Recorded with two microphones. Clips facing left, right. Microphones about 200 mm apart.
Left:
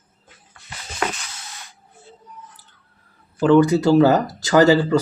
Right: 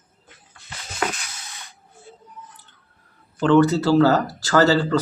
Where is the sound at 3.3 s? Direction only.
10° left (ahead or behind).